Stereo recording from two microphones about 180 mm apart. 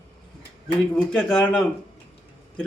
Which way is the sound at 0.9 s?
5° left (ahead or behind).